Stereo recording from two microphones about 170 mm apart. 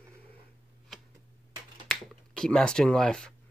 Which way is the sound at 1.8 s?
5° left (ahead or behind).